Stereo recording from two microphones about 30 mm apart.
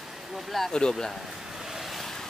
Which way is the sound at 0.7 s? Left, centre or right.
Left.